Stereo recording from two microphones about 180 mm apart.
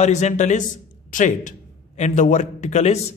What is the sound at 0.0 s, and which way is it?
A man's voice, 40° left (ahead or behind).